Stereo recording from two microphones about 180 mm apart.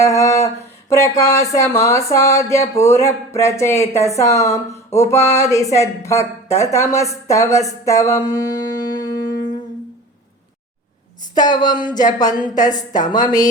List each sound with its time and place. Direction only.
0.0 s a sound: 15° left (ahead or behind)
0.9 s speech: 15° left (ahead or behind)
11.3 s a woman's voice: 25° left (ahead or behind)